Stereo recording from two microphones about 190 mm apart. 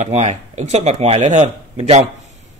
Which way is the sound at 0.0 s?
35° right (ahead or behind).